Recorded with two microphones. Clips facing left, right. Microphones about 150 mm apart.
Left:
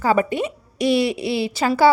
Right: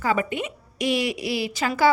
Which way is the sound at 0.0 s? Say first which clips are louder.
Left 5 dB; 35° left (ahead or behind).